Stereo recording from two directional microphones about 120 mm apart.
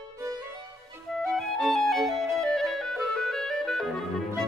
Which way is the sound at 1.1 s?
5° left (ahead or behind).